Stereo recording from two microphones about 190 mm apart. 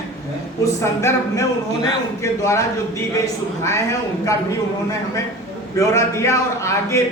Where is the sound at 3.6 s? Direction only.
15° left (ahead or behind).